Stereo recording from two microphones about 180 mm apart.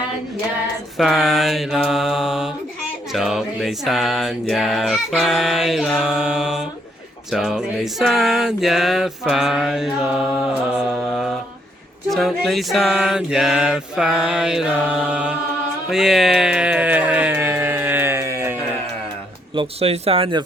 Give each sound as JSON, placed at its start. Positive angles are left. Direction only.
{"t": 0.9, "sound": "a sound", "side_deg": 0}
{"t": 15.9, "sound": "speech", "side_deg": 0}
{"t": 19.5, "sound": "speech", "side_deg": -35}